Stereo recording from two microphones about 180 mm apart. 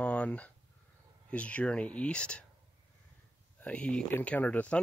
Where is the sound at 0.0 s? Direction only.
5° left (ahead or behind).